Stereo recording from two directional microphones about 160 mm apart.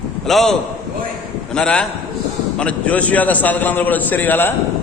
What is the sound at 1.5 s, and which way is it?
A man's voice, 5° left (ahead or behind).